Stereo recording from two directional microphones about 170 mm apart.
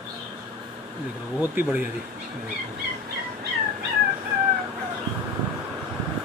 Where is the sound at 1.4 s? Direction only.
10° right (ahead or behind).